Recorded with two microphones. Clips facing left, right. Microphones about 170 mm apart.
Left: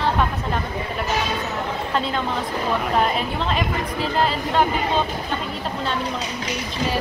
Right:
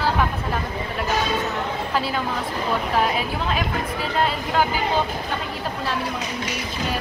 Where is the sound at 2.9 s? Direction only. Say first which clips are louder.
Even; 5° right (ahead or behind).